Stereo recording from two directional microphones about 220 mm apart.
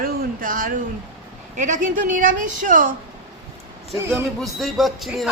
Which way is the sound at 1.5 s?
35° right (ahead or behind).